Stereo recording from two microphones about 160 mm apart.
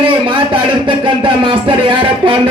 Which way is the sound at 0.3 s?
30° right (ahead or behind).